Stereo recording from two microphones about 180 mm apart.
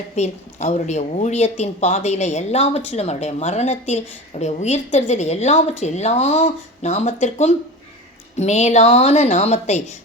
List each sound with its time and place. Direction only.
0.2 s speech: 40° left (ahead or behind)